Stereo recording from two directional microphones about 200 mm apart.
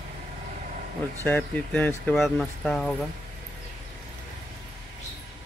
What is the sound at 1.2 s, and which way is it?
Speech, 10° left (ahead or behind).